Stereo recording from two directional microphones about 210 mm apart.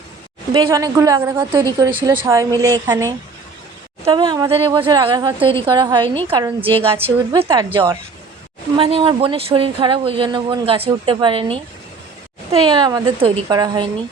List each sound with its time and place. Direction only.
0.5 s a woman's voice: 15° right (ahead or behind)
1.5 s a woman's voice: 20° right (ahead or behind)